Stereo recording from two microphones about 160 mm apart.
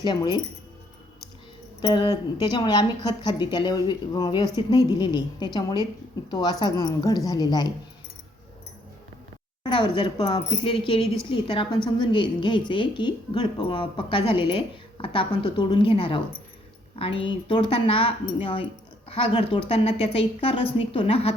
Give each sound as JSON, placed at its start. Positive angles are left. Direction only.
{"t": 0.0, "sound": "speech", "side_deg": 25}
{"t": 1.8, "sound": "speech", "side_deg": 30}
{"t": 9.6, "sound": "a woman's voice", "side_deg": 30}